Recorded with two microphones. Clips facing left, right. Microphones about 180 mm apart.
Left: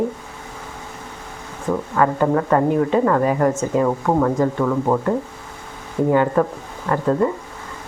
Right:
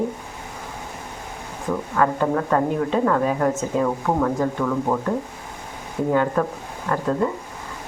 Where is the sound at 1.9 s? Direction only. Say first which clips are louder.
Left 3 dB; 5° left (ahead or behind).